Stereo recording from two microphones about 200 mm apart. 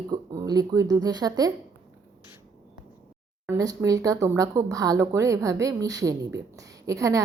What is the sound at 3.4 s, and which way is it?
Speech, 15° right (ahead or behind).